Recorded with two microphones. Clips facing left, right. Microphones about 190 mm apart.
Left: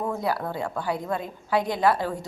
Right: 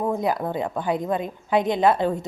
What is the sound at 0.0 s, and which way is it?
A woman's voice, 20° right (ahead or behind).